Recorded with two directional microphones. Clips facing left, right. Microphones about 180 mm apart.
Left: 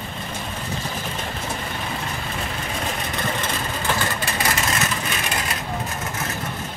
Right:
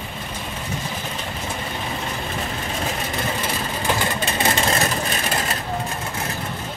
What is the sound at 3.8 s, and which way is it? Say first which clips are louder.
Vehicle: right 3 dB; 20° right (ahead or behind).